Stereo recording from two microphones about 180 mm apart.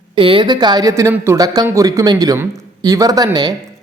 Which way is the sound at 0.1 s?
30° right (ahead or behind).